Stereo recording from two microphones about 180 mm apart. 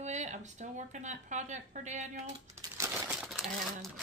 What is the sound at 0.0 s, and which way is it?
Speech, 40° right (ahead or behind).